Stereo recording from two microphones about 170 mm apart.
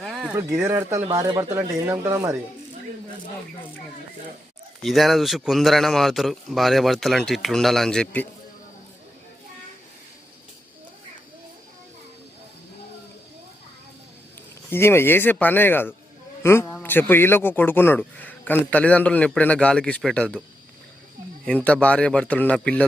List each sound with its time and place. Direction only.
0.0 s a sound: centre (ahead or behind)
0.3 s speech: 15° right (ahead or behind)
4.8 s a man's voice: centre (ahead or behind)
14.7 s a man's voice: 15° left (ahead or behind)
21.4 s a man's voice: 5° left (ahead or behind)